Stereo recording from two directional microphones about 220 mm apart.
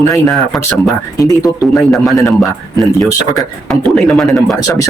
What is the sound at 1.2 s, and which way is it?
Speech, 15° left (ahead or behind).